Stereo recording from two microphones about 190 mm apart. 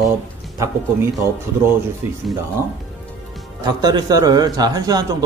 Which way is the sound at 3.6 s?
20° right (ahead or behind).